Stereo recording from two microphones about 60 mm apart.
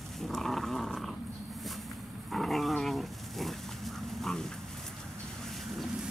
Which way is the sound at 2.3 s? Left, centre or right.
Centre.